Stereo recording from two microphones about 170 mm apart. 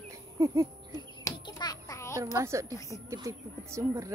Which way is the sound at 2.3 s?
15° right (ahead or behind).